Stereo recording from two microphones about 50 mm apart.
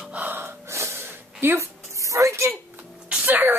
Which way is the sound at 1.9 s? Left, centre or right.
Right.